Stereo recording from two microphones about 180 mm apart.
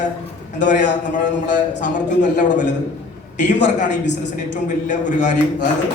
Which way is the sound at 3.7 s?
45° left (ahead or behind).